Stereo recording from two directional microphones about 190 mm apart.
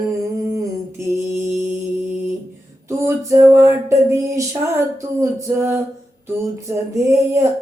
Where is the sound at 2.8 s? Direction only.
15° right (ahead or behind).